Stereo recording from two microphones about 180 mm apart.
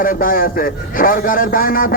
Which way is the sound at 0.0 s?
50° left (ahead or behind).